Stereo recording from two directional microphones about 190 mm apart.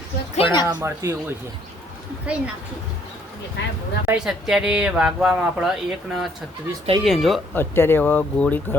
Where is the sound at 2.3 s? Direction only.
5° right (ahead or behind).